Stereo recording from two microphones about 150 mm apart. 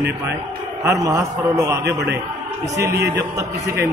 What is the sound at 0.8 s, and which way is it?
Speech, 20° right (ahead or behind).